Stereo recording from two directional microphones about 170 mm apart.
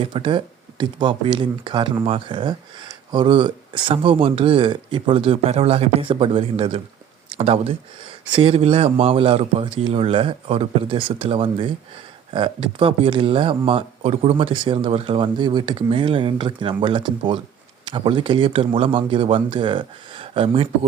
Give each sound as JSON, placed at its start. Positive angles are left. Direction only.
{"t": 0.0, "sound": "speech", "side_deg": -30}